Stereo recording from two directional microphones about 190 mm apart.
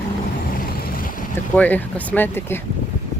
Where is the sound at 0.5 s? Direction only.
45° left (ahead or behind).